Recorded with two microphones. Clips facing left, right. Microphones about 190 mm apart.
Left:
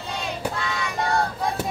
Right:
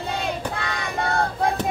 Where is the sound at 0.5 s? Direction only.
55° right (ahead or behind).